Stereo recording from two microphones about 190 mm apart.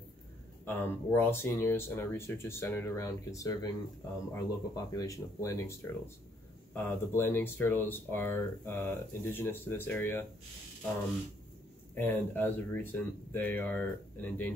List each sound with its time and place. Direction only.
0.7 s speech: 10° left (ahead or behind)
11.9 s speech: 10° left (ahead or behind)